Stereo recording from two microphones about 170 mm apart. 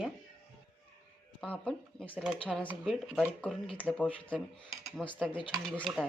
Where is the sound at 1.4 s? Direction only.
5° left (ahead or behind).